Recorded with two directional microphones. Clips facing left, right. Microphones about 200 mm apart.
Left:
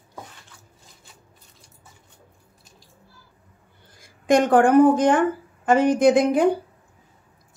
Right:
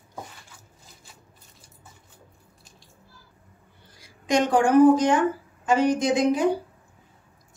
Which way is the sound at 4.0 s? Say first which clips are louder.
Left 4 dB; 55° left (ahead or behind).